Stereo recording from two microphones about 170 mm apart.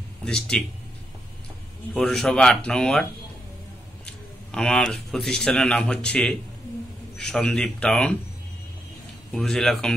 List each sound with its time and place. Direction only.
0.2 s speech: 5° left (ahead or behind)
2.0 s speech: centre (ahead or behind)
9.3 s speech: 5° left (ahead or behind)